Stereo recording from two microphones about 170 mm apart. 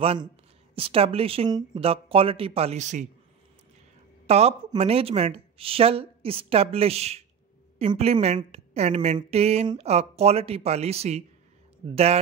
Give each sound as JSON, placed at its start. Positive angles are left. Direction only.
{"t": 0.0, "sound": "a woman's voice", "side_deg": -35}
{"t": 4.3, "sound": "a woman's voice", "side_deg": -40}